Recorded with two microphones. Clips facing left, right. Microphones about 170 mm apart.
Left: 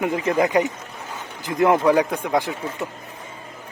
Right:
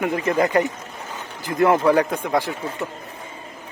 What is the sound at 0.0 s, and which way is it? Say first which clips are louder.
Speech: even; 15° left (ahead or behind).